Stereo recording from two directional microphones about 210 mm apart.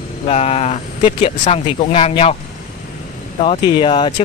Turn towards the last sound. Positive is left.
turn(degrees=20)  # may be behind; listen again after turning